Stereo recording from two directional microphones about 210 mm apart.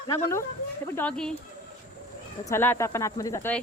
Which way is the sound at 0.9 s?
5° left (ahead or behind).